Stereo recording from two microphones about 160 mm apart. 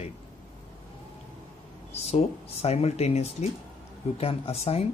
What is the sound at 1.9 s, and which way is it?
Speech, 40° left (ahead or behind).